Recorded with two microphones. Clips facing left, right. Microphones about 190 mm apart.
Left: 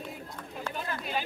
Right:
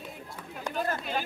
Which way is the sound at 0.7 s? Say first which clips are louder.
Right 5 dB; 15° right (ahead or behind).